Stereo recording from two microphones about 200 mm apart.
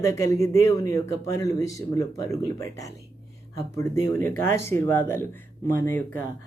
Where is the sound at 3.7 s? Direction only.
10° left (ahead or behind).